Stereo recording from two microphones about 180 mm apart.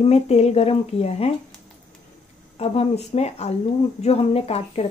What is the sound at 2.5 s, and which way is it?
Speech, 35° left (ahead or behind).